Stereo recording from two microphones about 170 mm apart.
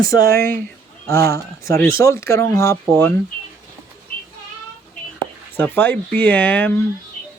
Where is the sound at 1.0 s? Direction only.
20° left (ahead or behind).